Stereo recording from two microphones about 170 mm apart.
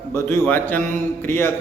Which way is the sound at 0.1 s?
15° left (ahead or behind).